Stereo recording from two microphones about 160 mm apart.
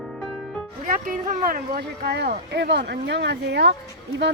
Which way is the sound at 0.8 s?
60° right (ahead or behind).